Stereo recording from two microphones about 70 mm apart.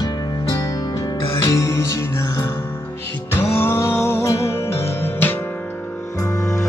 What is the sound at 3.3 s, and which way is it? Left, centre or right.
Music, left.